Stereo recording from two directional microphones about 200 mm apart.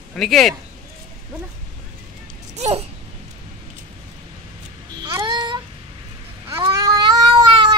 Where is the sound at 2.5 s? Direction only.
30° right (ahead or behind).